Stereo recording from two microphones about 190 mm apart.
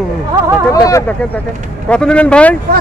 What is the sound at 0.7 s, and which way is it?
Speech, 20° left (ahead or behind).